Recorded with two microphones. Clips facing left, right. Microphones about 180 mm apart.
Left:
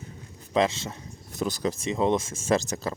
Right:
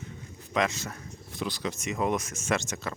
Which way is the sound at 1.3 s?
45° left (ahead or behind).